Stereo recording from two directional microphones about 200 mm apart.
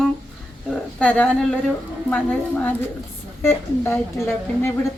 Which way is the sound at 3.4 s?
10° left (ahead or behind).